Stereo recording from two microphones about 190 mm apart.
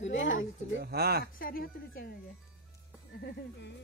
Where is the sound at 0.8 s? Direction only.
55° right (ahead or behind).